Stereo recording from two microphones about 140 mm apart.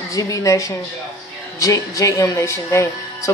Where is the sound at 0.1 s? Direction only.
25° left (ahead or behind).